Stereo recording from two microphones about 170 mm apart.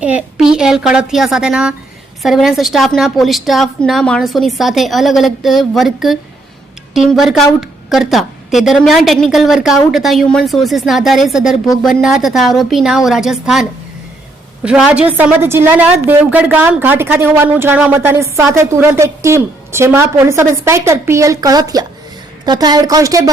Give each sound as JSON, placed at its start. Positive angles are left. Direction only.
{"t": 0.0, "sound": "a woman's voice", "side_deg": -5}